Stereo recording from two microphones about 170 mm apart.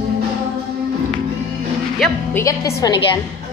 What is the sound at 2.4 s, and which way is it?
Speech, 15° left (ahead or behind).